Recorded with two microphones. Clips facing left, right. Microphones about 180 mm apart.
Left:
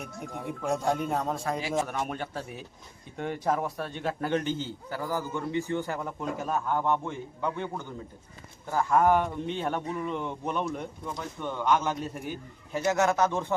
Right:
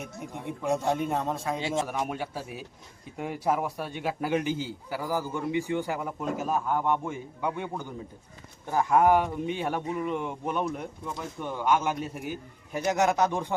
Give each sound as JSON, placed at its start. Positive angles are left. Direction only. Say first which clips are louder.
{"t": 0.6, "sound": "a man's voice", "louder": "right 1 dB", "side_deg": 0}
{"t": 12.8, "sound": "a man's voice", "louder": "even", "side_deg": -15}